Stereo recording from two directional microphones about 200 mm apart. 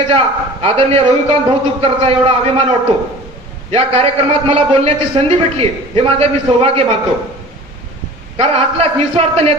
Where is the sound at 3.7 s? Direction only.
30° right (ahead or behind).